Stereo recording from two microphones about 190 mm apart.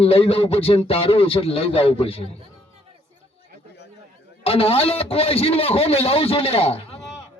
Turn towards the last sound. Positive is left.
turn(degrees=30)  # may be behind; listen again after turning